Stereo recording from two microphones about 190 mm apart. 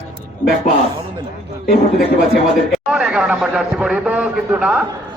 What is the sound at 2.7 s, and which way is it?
A man's voice, 5° right (ahead or behind).